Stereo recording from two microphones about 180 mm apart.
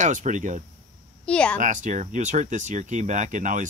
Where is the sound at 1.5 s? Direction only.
45° right (ahead or behind).